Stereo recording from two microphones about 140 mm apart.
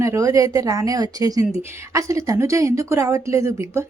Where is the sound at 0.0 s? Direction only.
20° right (ahead or behind).